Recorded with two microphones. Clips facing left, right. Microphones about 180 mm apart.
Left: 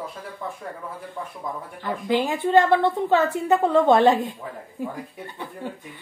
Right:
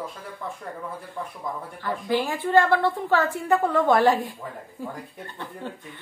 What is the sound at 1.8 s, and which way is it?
A woman's voice, 20° left (ahead or behind).